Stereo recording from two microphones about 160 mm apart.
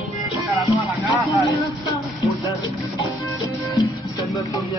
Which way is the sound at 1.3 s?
20° left (ahead or behind).